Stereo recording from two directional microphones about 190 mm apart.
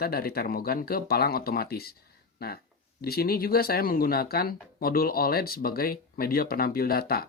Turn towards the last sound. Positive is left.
turn(degrees=55)  # may be behind; listen again after turning